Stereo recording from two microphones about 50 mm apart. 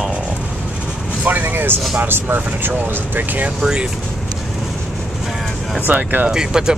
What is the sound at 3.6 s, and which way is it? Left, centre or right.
Speech, centre.